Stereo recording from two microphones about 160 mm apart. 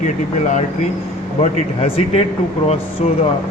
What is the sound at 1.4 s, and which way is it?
Speech, 40° left (ahead or behind).